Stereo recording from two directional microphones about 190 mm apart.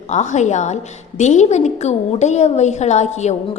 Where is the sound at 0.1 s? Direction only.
40° left (ahead or behind).